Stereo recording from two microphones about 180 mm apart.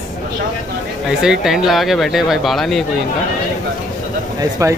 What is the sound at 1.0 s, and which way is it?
Speech, 5° right (ahead or behind).